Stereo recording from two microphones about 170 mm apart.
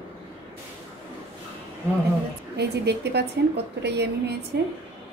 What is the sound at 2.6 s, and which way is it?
A woman's voice, 80° right.